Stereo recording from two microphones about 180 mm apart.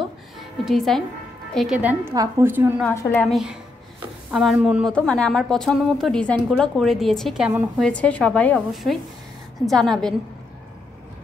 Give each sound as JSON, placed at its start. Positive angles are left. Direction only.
{"t": 0.4, "sound": "a woman's voice", "side_deg": 0}
{"t": 2.8, "sound": "a woman's voice", "side_deg": 15}
{"t": 3.1, "sound": "a woman's voice", "side_deg": 5}
{"t": 4.9, "sound": "a woman's voice", "side_deg": 5}
{"t": 7.9, "sound": "a woman's voice", "side_deg": 5}